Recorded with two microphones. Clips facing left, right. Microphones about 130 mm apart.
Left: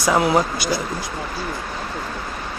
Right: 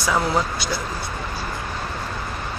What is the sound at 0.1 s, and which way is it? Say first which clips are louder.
Speech: left 5 dB; 15° left (ahead or behind).